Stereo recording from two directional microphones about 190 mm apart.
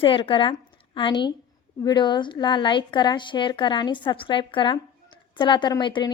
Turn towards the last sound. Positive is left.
turn(degrees=25)  # may be behind; listen again after turning